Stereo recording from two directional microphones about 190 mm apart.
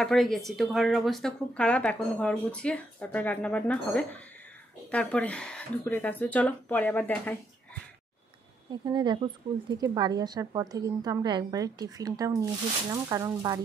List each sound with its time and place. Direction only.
0.0 s speech: centre (ahead or behind)
8.8 s speech: 25° right (ahead or behind)